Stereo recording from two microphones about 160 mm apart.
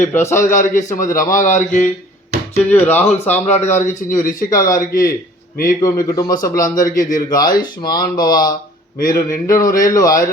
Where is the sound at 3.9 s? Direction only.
55° left (ahead or behind).